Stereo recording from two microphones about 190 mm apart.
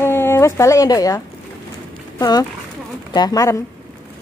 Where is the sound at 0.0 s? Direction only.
10° left (ahead or behind).